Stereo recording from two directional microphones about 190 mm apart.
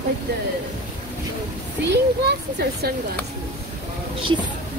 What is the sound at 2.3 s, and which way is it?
Speech, 60° right (ahead or behind).